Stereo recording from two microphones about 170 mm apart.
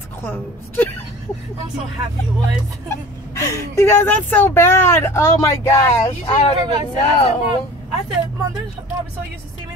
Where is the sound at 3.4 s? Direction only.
15° left (ahead or behind).